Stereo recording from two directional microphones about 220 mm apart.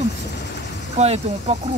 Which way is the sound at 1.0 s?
30° right (ahead or behind).